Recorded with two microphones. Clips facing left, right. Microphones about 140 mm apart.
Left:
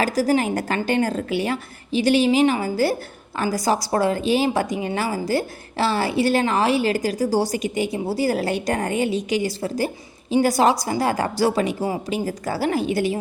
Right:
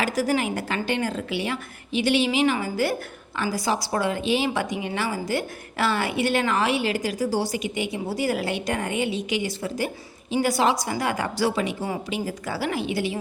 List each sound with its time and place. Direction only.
0.0 s a woman's voice: 35° left (ahead or behind)